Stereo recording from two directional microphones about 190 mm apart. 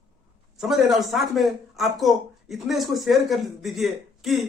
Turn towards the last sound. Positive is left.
turn(degrees=0)  # may be behind; listen again after turning